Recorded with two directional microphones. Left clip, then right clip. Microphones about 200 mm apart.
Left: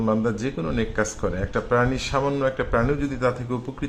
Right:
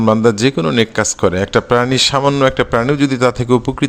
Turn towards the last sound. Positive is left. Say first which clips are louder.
# right 15 dB
turn(degrees=-45)  # may be behind; listen again after turning